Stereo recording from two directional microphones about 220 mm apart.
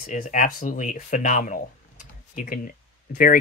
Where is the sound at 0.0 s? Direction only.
35° left (ahead or behind).